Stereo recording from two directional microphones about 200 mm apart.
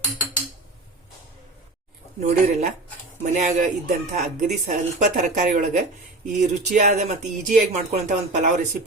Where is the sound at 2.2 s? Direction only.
35° right (ahead or behind).